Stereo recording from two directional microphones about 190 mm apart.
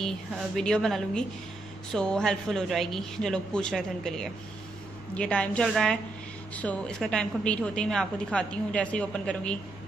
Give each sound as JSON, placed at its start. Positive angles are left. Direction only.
{"t": 0.6, "sound": "a woman's voice", "side_deg": 5}